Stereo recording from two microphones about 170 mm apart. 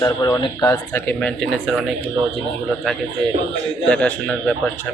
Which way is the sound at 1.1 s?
5° left (ahead or behind).